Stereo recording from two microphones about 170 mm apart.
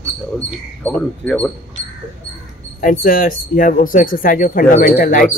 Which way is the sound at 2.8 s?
55° left (ahead or behind).